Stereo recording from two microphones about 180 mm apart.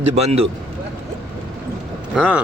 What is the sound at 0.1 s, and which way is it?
Speech, 35° right (ahead or behind).